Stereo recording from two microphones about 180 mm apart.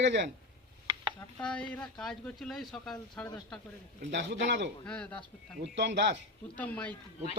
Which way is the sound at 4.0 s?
75° right (ahead or behind).